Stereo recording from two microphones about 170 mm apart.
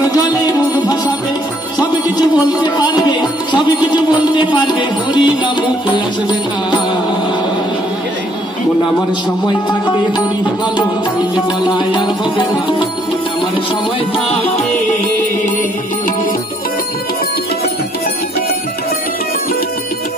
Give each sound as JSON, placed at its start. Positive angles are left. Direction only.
{"t": 2.6, "sound": "music", "side_deg": 25}
{"t": 9.7, "sound": "music", "side_deg": 25}
{"t": 11.6, "sound": "music", "side_deg": 25}
{"t": 14.1, "sound": "music", "side_deg": 30}